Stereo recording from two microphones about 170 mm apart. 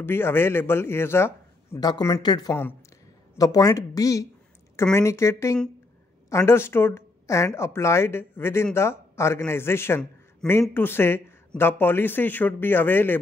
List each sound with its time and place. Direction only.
0.0 s a man's voice: 15° left (ahead or behind)